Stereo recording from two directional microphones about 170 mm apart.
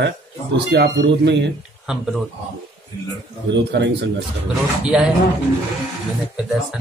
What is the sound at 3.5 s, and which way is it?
Speech, 90° right.